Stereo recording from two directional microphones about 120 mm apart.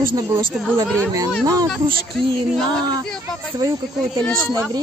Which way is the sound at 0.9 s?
25° right (ahead or behind).